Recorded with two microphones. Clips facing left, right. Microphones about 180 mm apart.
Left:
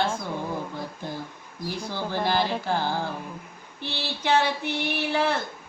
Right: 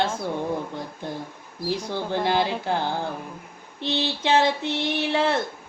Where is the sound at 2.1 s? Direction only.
20° right (ahead or behind).